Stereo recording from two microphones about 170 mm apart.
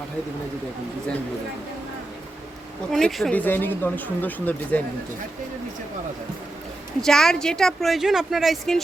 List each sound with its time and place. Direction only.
2.9 s speech: centre (ahead or behind)
7.0 s speech: 5° left (ahead or behind)